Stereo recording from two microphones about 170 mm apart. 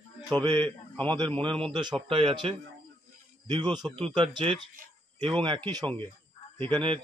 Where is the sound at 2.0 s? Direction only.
30° right (ahead or behind).